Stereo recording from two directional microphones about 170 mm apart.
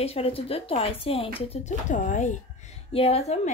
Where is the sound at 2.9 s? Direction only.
35° left (ahead or behind).